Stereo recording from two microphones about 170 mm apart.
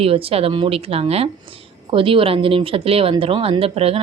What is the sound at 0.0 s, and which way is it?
Speech, 35° right (ahead or behind).